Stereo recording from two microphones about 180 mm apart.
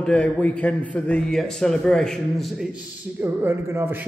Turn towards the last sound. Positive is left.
turn(degrees=-10)  # may be behind; listen again after turning